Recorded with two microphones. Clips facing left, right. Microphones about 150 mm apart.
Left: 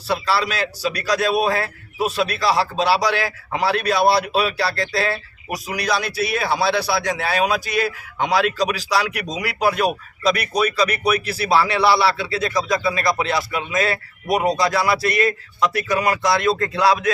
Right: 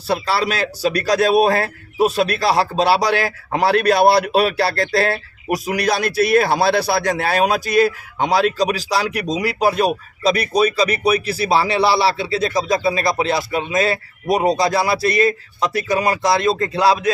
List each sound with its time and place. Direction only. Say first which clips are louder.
0.1 s a man's voice: right 2 dB; 45° right (ahead or behind); by 17.1 s 30° right (ahead or behind)